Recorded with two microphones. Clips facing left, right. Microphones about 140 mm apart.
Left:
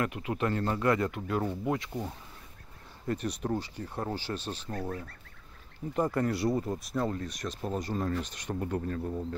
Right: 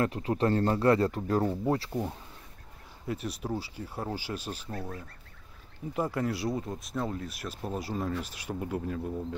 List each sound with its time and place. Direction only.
0.0 s speech: 35° right (ahead or behind)
1.9 s speech: 10° right (ahead or behind)
5.9 s speech: 5° right (ahead or behind)